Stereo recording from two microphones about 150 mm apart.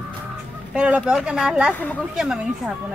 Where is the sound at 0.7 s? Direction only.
10° right (ahead or behind).